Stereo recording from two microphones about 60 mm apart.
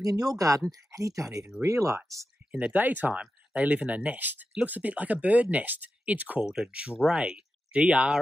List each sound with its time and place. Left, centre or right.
0.0 s speech: right
0.7 s speech: right
2.7 s speech: right
6.4 s speech: centre
6.7 s speech: centre